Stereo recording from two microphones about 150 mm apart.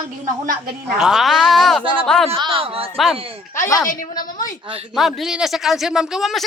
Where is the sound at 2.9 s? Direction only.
Centre (ahead or behind).